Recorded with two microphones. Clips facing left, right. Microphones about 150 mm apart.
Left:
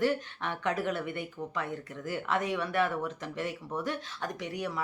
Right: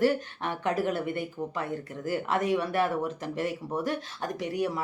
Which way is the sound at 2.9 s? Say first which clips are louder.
Right 4 dB; 10° right (ahead or behind).